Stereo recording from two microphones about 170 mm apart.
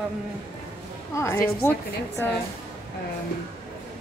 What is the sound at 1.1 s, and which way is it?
Speech, 15° left (ahead or behind).